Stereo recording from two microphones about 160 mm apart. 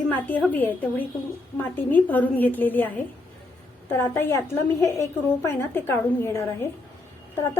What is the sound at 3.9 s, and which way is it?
A woman's voice, 15° left (ahead or behind).